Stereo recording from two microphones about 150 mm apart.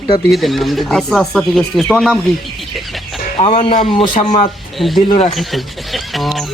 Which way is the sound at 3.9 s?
30° left (ahead or behind).